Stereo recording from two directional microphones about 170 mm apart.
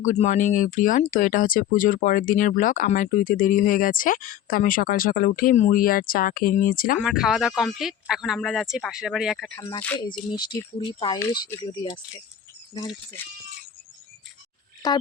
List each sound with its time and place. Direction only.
0.0 s speech: 45° left (ahead or behind)
7.0 s speech: centre (ahead or behind)
9.6 s speech: 20° left (ahead or behind)
11.2 s speech: 15° left (ahead or behind)
11.6 s speech: 25° left (ahead or behind)
14.8 s speech: 20° left (ahead or behind)